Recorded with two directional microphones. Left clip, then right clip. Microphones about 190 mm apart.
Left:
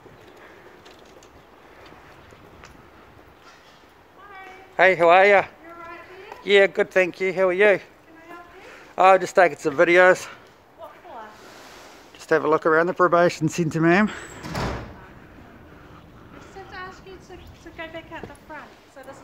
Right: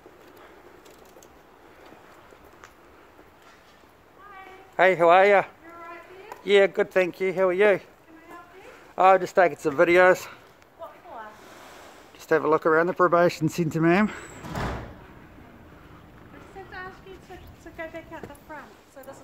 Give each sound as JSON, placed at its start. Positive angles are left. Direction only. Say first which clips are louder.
{"t": 4.7, "sound": "speech", "louder": "left 2 dB", "side_deg": -10}
{"t": 12.2, "sound": "speech", "louder": "left 2 dB", "side_deg": 0}
{"t": 17.7, "sound": "a sound", "louder": "left 2 dB", "side_deg": -45}